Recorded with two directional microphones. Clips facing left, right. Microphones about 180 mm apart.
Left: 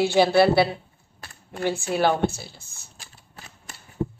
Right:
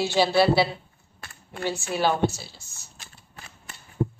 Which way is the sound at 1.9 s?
55° left (ahead or behind).